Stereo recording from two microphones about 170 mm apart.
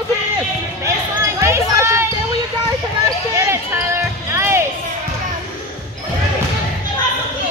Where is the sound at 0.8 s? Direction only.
15° right (ahead or behind).